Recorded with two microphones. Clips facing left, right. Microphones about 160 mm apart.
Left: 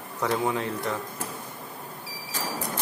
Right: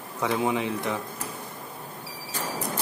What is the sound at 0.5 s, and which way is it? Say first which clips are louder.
Speech: right 1 dB; 15° right (ahead or behind).